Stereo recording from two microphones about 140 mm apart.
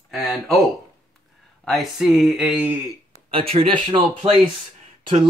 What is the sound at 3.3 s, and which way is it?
Speech, 45° right (ahead or behind).